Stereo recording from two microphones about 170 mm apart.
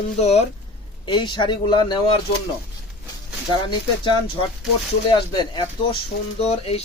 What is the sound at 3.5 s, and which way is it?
Speech, 30° left (ahead or behind).